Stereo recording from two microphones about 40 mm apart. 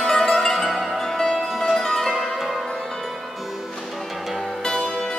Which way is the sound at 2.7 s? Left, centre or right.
Centre.